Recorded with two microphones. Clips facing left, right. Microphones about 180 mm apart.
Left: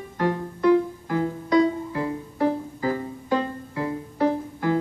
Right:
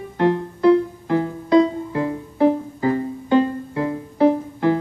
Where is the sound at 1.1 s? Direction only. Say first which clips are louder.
Right 7 dB; 30° right (ahead or behind).